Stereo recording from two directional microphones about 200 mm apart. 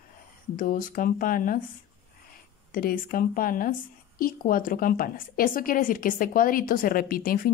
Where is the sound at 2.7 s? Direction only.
45° left (ahead or behind).